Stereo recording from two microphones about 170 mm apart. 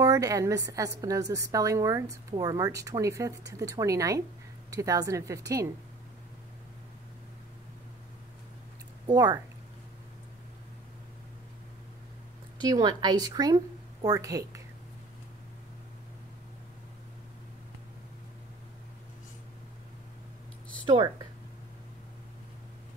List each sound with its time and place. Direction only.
0.0 s a woman's voice: 20° right (ahead or behind)
9.0 s speech: 25° right (ahead or behind)
12.5 s a woman's voice: 25° right (ahead or behind)
20.8 s speech: 25° right (ahead or behind)